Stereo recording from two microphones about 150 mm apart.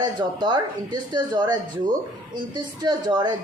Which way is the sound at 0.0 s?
30° right (ahead or behind).